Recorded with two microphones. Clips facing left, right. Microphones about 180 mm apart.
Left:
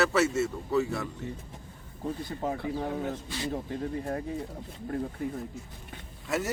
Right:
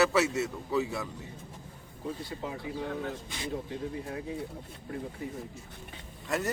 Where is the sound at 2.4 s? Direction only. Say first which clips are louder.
Left 6 dB; 45° left (ahead or behind).